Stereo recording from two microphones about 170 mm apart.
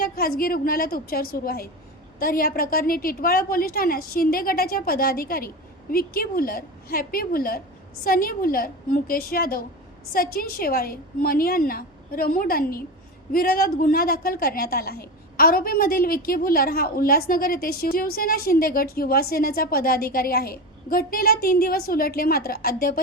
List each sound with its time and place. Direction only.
0.0 s a woman's voice: 60° left (ahead or behind)